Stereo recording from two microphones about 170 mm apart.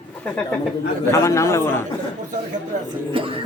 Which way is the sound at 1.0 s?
15° left (ahead or behind).